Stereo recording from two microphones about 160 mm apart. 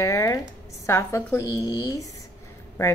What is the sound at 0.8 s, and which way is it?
A woman's voice, 15° left (ahead or behind).